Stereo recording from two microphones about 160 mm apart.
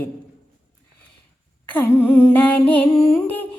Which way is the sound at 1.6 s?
10° left (ahead or behind).